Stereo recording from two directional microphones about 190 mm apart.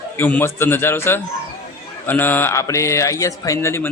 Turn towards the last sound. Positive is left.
turn(degrees=15)  # may be behind; listen again after turning